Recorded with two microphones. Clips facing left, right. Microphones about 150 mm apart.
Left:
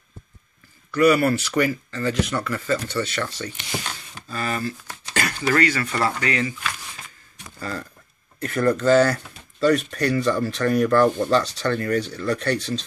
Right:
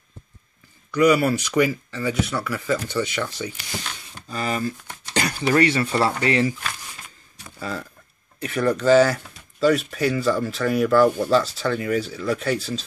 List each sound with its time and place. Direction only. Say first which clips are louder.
0.9 s speech: even; 15° right (ahead or behind)
8.4 s speech: left 1 dB; 5° right (ahead or behind)